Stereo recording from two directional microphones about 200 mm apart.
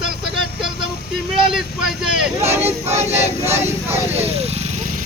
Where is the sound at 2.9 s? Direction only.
30° right (ahead or behind).